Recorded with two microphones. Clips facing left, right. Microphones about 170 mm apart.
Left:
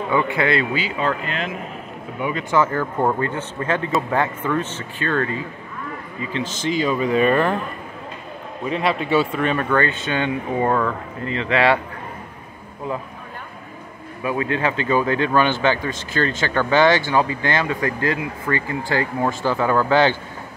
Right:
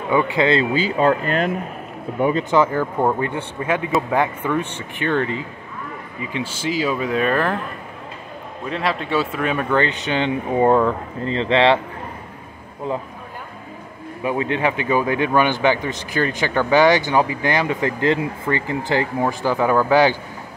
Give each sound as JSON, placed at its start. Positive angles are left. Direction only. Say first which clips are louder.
{"t": 0.1, "sound": "speech", "louder": "right 3 dB", "side_deg": -20}
{"t": 0.9, "sound": "speech", "louder": "right 6 dB", "side_deg": -45}
{"t": 2.5, "sound": "a man's voice", "louder": "right 2 dB", "side_deg": -15}
{"t": 8.6, "sound": "speech", "louder": "left 2 dB", "side_deg": 5}
{"t": 9.8, "sound": "speech", "louder": "right 1 dB", "side_deg": -20}
{"t": 14.2, "sound": "a man's voice", "louder": "right 1 dB", "side_deg": -20}